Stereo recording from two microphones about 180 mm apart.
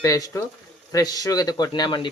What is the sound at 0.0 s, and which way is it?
Speech, 20° left (ahead or behind).